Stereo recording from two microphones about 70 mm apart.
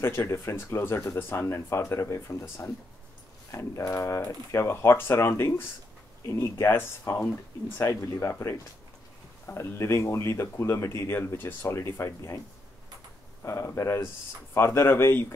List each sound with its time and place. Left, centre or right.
0.0 s speech: left
7.9 s speech: left
13.4 s speech: left